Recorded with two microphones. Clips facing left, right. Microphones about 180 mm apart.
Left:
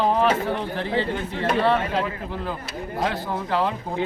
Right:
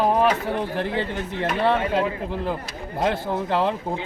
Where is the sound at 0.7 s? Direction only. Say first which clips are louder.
Even; 55° right (ahead or behind).